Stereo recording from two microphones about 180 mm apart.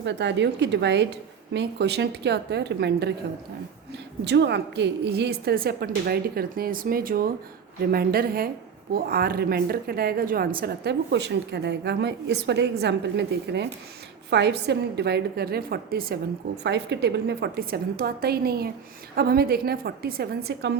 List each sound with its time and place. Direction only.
0.0 s a woman's voice: 75° right (ahead or behind)
4.2 s a woman's voice: 70° right (ahead or behind)
16.6 s a woman's voice: 70° right (ahead or behind)